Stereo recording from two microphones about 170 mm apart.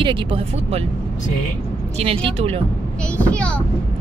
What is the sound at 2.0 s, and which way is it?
Speech, 35° right (ahead or behind).